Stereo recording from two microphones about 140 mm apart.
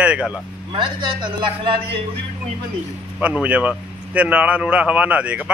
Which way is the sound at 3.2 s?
10° right (ahead or behind).